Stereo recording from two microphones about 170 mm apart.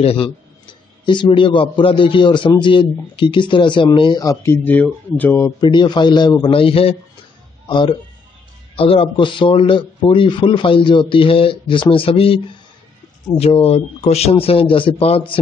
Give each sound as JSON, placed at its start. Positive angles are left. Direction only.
{"t": 0.0, "sound": "speech", "side_deg": 35}
{"t": 5.6, "sound": "speech", "side_deg": 25}